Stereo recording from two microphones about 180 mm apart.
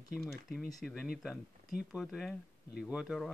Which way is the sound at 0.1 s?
Centre (ahead or behind).